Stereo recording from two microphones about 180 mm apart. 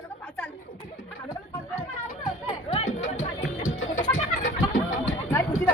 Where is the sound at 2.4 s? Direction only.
35° left (ahead or behind).